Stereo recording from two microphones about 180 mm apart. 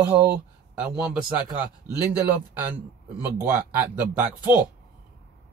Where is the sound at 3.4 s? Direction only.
10° right (ahead or behind).